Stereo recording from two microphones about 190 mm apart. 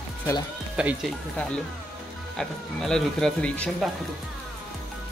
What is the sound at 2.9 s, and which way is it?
Speech, 5° left (ahead or behind).